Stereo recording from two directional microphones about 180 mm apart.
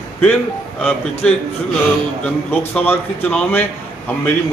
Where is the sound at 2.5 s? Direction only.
10° left (ahead or behind).